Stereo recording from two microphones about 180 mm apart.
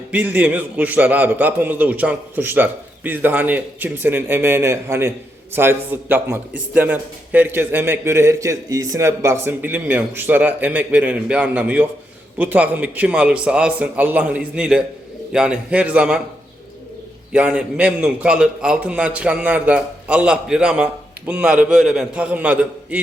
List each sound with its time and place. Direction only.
0.1 s a man's voice: 10° right (ahead or behind)
17.3 s a man's voice: 5° right (ahead or behind)